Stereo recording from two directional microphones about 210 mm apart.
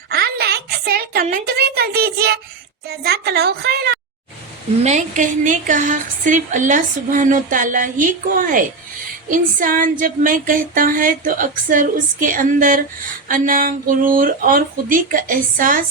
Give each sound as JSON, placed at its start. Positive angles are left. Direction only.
{"t": 0.1, "sound": "a sound", "side_deg": -50}
{"t": 2.8, "sound": "a woman's voice", "side_deg": -50}
{"t": 4.8, "sound": "a woman's voice", "side_deg": -35}